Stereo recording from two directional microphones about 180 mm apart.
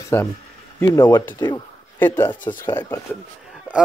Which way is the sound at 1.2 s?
10° left (ahead or behind).